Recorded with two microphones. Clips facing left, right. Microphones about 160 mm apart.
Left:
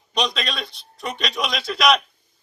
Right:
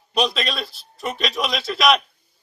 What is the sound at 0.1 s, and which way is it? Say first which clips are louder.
A man's voice: right 2 dB; 5° right (ahead or behind).